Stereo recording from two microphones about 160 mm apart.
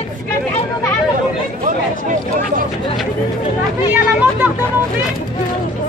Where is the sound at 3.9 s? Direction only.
10° right (ahead or behind).